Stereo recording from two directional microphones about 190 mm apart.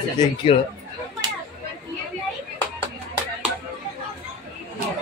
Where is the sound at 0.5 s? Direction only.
30° left (ahead or behind).